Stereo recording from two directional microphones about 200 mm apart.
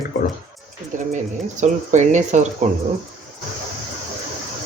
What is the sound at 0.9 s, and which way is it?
Speech, 40° right (ahead or behind).